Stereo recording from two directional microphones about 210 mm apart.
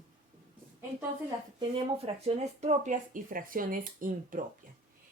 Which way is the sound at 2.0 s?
30° right (ahead or behind).